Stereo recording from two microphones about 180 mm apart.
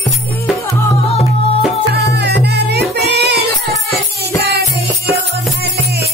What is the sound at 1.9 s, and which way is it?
Music, 65° right (ahead or behind).